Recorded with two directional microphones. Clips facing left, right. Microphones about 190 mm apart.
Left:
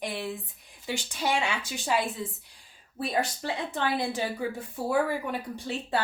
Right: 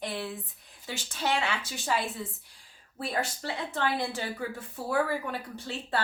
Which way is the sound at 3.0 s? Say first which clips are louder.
Left 3 dB; 15° left (ahead or behind).